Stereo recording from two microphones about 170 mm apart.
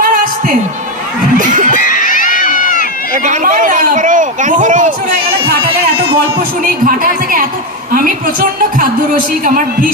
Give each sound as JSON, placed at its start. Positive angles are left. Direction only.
{"t": 1.4, "sound": "a man's voice", "side_deg": -50}
{"t": 1.8, "sound": "crowd", "side_deg": 50}
{"t": 3.2, "sound": "a sound", "side_deg": -50}
{"t": 8.8, "sound": "a man's voice", "side_deg": -55}